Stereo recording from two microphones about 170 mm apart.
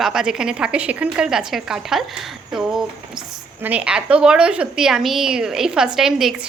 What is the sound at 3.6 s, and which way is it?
A woman's voice, 5° right (ahead or behind).